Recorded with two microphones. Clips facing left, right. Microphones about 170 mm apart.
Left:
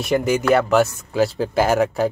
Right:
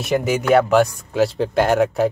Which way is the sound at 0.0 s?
Centre (ahead or behind).